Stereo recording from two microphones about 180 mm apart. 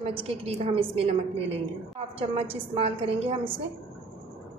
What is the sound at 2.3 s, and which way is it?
A woman's voice, 35° right (ahead or behind).